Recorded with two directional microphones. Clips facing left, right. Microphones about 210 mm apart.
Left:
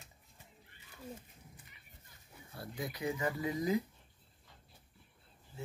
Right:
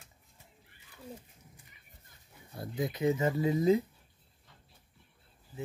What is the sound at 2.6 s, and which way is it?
Speech, 20° right (ahead or behind).